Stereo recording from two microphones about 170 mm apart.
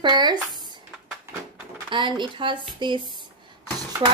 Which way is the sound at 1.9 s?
30° right (ahead or behind).